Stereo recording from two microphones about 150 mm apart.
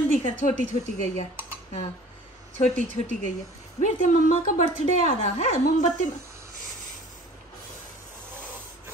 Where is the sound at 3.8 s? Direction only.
55° left (ahead or behind).